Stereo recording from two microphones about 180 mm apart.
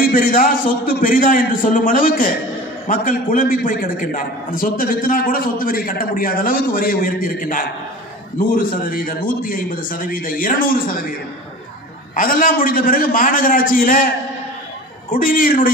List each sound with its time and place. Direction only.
0.1 s a man's voice: 50° left (ahead or behind)
12.2 s a man's voice: 50° left (ahead or behind)
15.1 s a man's voice: 50° left (ahead or behind)